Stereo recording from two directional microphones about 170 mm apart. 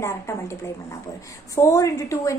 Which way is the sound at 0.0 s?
15° left (ahead or behind).